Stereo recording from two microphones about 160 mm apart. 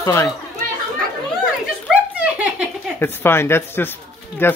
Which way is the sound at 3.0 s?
15° left (ahead or behind).